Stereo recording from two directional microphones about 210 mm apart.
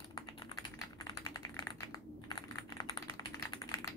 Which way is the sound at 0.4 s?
15° left (ahead or behind).